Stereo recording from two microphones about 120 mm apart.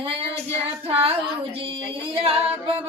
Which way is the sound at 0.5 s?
55° right (ahead or behind).